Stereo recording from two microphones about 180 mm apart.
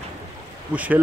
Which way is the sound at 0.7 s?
10° right (ahead or behind).